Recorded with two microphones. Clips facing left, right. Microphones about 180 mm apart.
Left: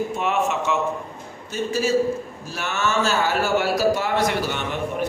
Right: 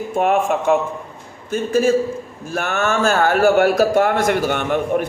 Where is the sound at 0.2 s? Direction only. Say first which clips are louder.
Right 9 dB; 50° right (ahead or behind).